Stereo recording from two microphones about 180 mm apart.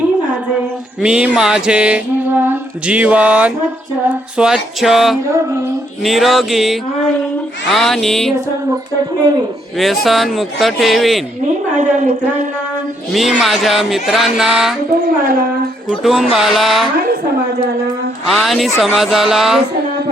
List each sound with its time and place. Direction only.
1.0 s speech: 5° right (ahead or behind)
9.7 s speech: centre (ahead or behind)
11.8 s speech: 45° right (ahead or behind)
13.1 s speech: centre (ahead or behind)
15.0 s speech: 50° right (ahead or behind)
15.9 s speech: centre (ahead or behind)
18.3 s speech: centre (ahead or behind)